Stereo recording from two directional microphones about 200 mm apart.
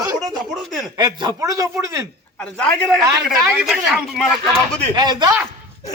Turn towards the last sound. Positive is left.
turn(degrees=-20)  # may be behind; listen again after turning